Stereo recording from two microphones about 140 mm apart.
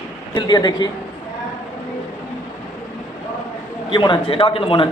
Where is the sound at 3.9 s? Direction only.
30° left (ahead or behind).